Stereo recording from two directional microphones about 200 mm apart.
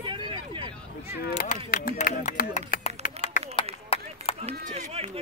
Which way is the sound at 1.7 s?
40° left (ahead or behind).